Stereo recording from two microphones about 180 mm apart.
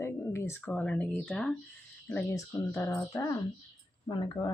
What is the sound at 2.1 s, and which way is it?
Speech, 15° left (ahead or behind).